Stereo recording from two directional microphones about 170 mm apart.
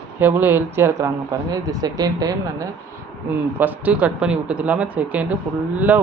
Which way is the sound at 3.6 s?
10° right (ahead or behind).